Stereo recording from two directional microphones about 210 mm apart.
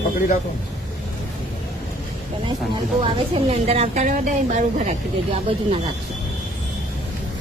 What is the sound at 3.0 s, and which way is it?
A woman's voice, 25° right (ahead or behind).